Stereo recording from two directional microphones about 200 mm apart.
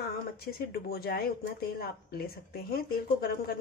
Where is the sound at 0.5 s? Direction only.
50° left (ahead or behind).